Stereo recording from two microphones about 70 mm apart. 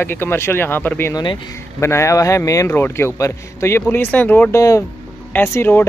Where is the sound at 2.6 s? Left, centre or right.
Left.